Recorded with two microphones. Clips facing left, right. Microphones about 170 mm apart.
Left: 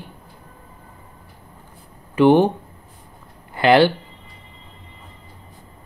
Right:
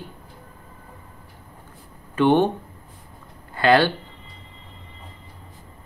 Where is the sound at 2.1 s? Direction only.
10° left (ahead or behind).